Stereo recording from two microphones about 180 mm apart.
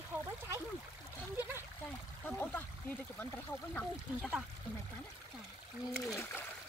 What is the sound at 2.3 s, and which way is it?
Speech, 10° left (ahead or behind).